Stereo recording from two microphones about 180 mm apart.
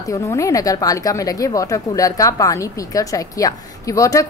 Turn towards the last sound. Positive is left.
turn(degrees=20)  # may be behind; listen again after turning